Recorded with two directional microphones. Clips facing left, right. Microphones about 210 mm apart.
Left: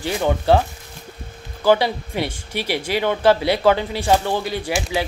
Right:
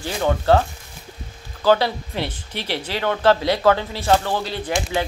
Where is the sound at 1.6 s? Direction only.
15° left (ahead or behind).